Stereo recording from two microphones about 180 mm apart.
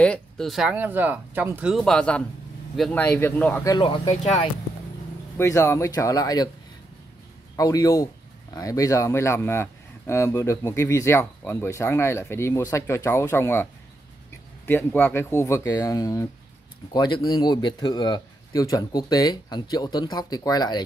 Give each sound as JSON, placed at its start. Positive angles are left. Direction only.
{"t": 0.0, "sound": "a man's voice", "side_deg": 5}
{"t": 3.7, "sound": "speech", "side_deg": 25}
{"t": 5.4, "sound": "a man's voice", "side_deg": 15}
{"t": 7.5, "sound": "a man's voice", "side_deg": 20}
{"t": 14.7, "sound": "a man's voice", "side_deg": 10}